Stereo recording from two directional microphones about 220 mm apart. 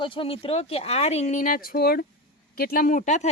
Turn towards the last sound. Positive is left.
turn(degrees=30)  # may be behind; listen again after turning